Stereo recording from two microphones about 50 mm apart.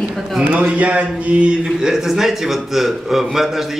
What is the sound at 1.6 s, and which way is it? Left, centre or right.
Speech, centre.